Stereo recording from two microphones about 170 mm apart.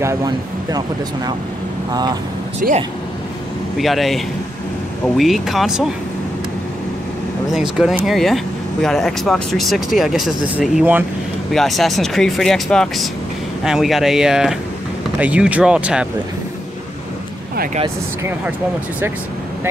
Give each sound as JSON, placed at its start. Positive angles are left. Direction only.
{"t": 0.0, "sound": "speech", "side_deg": -20}
{"t": 2.6, "sound": "speech", "side_deg": -60}
{"t": 3.7, "sound": "speech", "side_deg": 0}
{"t": 7.5, "sound": "speech", "side_deg": -5}
{"t": 11.5, "sound": "speech", "side_deg": 0}